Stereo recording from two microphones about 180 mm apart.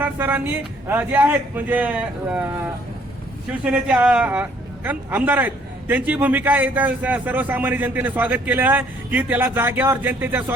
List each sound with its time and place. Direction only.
0.0 s a man's voice: 10° right (ahead or behind)
3.6 s a man's voice: 5° right (ahead or behind)